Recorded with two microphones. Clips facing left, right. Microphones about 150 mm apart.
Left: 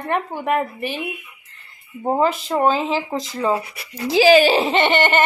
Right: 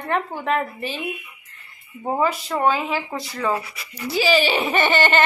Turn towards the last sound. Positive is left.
turn(degrees=20)  # may be behind; listen again after turning